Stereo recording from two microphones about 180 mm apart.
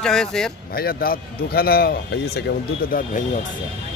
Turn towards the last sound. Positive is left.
turn(degrees=50)  # may be behind; listen again after turning